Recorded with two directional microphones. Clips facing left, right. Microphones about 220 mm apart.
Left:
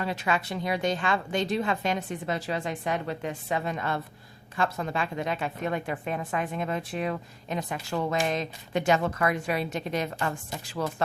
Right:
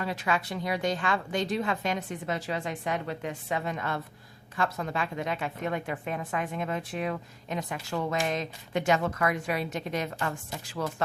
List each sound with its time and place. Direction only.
0.0 s a woman's voice: 25° left (ahead or behind)